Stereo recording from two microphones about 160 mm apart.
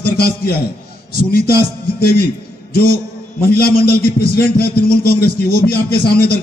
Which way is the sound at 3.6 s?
75° left (ahead or behind).